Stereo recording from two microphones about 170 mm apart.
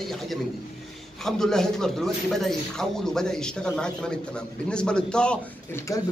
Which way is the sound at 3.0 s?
5° left (ahead or behind).